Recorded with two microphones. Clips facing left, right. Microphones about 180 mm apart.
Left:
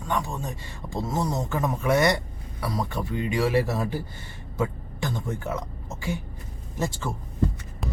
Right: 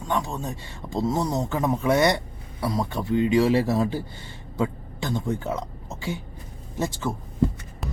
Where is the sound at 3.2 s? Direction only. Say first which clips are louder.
Right 4 dB; 25° right (ahead or behind).